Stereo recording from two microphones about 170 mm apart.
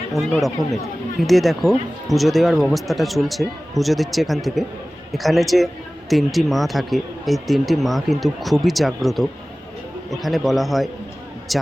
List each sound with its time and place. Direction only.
0.1 s a man's voice: centre (ahead or behind)